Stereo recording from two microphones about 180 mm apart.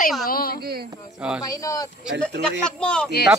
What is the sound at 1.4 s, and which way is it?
Speech, 20° left (ahead or behind).